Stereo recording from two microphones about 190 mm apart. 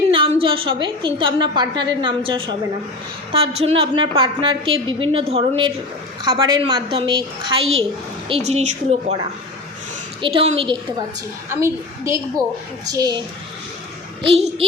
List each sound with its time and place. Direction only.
0.1 s a woman's voice: 25° right (ahead or behind)
10.2 s a woman's voice: 25° right (ahead or behind)
11.4 s a woman's voice: 15° right (ahead or behind)
14.2 s speech: 30° right (ahead or behind)